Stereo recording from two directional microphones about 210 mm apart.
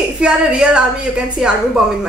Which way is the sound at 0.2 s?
5° right (ahead or behind).